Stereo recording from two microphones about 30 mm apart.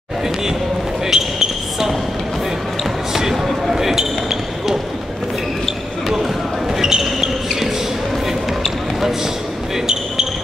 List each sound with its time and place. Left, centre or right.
1.0 s basketball bounce: centre
3.1 s basketball bounce: centre
6.0 s basketball bounce: centre